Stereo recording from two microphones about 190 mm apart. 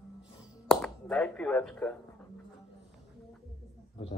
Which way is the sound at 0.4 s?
5° left (ahead or behind).